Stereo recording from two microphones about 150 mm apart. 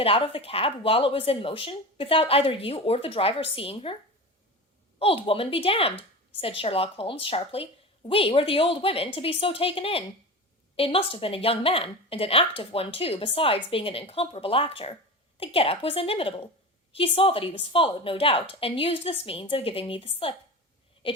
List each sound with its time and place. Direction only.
0.0 s a woman's voice: 40° left (ahead or behind)
4.9 s a woman's voice: 40° left (ahead or behind)